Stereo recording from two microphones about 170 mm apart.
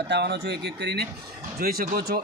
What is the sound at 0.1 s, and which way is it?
Speech, 85° right.